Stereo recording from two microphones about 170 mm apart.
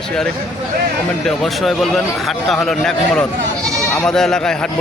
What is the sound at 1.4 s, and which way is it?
A man's voice, centre (ahead or behind).